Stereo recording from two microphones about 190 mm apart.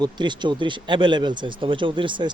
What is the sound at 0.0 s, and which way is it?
A woman's voice, 25° right (ahead or behind).